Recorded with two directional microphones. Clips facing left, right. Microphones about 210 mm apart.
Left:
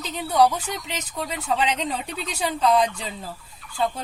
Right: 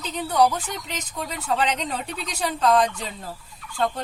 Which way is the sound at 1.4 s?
5° left (ahead or behind).